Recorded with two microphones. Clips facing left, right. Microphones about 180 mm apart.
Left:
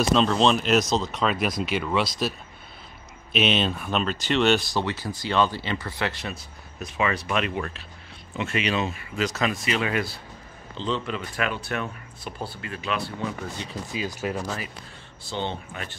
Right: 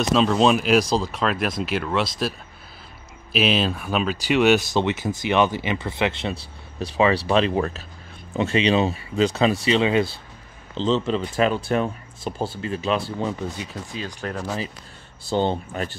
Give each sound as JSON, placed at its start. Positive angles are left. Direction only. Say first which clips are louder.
{"t": 0.1, "sound": "speech", "louder": "right 4 dB", "side_deg": -5}
{"t": 3.3, "sound": "speech", "louder": "right 2 dB", "side_deg": -5}
{"t": 4.7, "sound": "speech", "louder": "right 5 dB", "side_deg": -20}
{"t": 6.3, "sound": "speech", "louder": "right 5 dB", "side_deg": -30}
{"t": 13.9, "sound": "speech", "louder": "left 2 dB", "side_deg": 10}
{"t": 15.2, "sound": "speech", "louder": "right 8 dB", "side_deg": -40}